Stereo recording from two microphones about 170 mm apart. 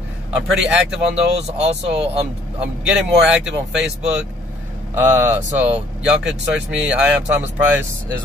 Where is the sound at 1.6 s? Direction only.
35° right (ahead or behind).